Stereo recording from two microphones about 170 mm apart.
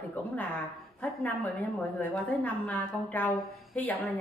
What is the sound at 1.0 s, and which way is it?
A woman's voice, 10° left (ahead or behind).